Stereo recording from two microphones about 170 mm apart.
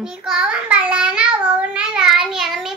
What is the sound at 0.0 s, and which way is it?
Child singing, 5° right (ahead or behind).